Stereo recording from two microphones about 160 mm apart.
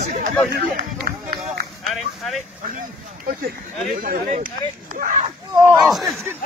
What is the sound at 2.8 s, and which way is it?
Speech, 60° right (ahead or behind).